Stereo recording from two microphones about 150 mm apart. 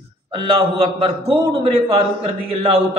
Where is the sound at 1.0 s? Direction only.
40° right (ahead or behind).